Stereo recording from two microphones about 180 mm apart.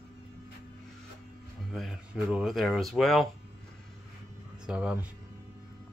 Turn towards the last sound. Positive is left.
turn(degrees=-5)  # may be behind; listen again after turning